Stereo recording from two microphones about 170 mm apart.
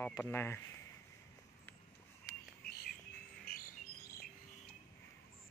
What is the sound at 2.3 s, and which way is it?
Bird, 20° left (ahead or behind).